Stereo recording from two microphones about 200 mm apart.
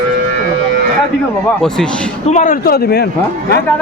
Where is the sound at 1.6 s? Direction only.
5° left (ahead or behind).